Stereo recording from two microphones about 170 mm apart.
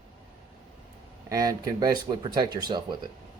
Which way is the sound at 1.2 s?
20° right (ahead or behind).